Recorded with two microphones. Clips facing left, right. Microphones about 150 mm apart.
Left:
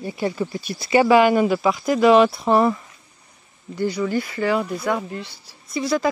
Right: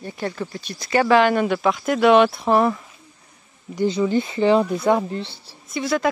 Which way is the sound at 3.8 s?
20° right (ahead or behind).